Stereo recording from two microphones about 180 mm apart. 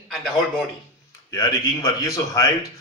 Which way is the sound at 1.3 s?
15° left (ahead or behind).